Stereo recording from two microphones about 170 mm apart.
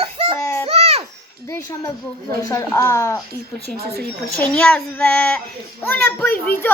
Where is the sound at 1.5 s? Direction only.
20° left (ahead or behind).